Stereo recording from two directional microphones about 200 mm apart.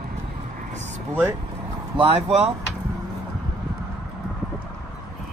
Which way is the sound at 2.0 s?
30° right (ahead or behind).